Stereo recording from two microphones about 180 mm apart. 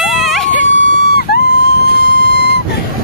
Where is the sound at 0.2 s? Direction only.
Centre (ahead or behind).